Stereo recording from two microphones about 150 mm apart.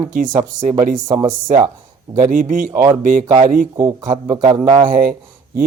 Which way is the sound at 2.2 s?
60° right (ahead or behind).